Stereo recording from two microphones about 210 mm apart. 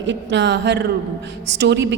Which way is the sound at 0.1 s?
55° right (ahead or behind).